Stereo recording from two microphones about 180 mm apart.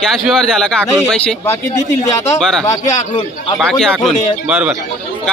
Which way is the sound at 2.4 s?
Centre (ahead or behind).